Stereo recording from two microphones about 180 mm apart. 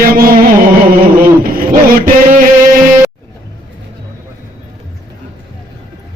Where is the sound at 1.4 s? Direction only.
55° right (ahead or behind).